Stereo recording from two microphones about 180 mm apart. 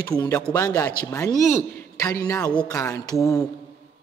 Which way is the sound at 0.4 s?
10° left (ahead or behind).